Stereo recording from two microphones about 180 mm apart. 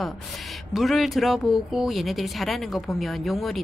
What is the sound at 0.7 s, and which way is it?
Speech, centre (ahead or behind).